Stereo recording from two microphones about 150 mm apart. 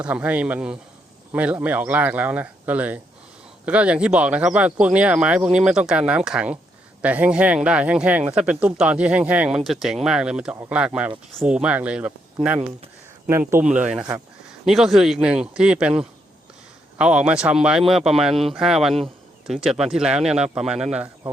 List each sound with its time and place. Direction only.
0.0 s speech: 10° right (ahead or behind)